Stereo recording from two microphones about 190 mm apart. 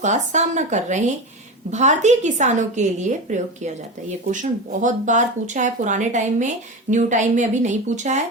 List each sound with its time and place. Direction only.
0.0 s speech: 40° right (ahead or behind)